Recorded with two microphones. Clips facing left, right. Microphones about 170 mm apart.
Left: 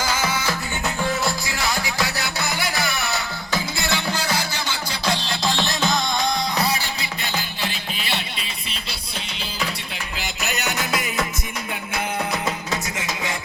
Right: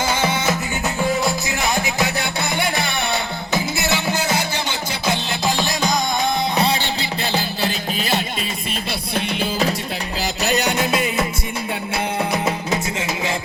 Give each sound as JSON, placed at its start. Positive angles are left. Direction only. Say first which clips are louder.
{"t": 0.0, "sound": "music", "louder": "right 4 dB", "side_deg": -30}
{"t": 6.6, "sound": "music", "louder": "right 4 dB", "side_deg": -25}
{"t": 10.2, "sound": "music", "louder": "right 8 dB", "side_deg": -35}